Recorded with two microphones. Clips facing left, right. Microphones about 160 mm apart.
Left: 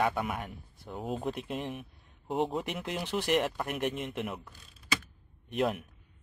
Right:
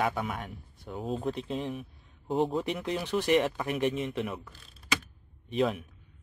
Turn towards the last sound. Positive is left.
turn(degrees=0)  # may be behind; listen again after turning